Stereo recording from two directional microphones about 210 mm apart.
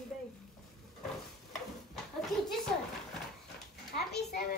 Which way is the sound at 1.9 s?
Centre (ahead or behind).